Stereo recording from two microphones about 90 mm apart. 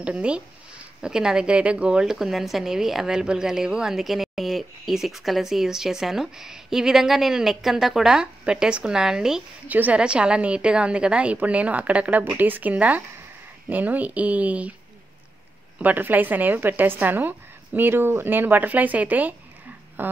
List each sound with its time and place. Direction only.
0.0 s a woman's voice: 10° right (ahead or behind)
9.7 s a woman's voice: 20° right (ahead or behind)
15.8 s a woman's voice: 20° right (ahead or behind)